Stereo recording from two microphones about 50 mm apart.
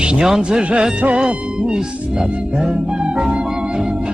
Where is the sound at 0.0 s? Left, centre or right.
Centre.